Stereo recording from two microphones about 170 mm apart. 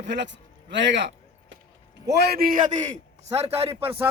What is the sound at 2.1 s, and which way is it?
Speech, 70° right (ahead or behind).